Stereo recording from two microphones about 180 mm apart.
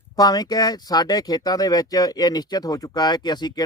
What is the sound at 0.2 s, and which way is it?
Speech, 20° left (ahead or behind).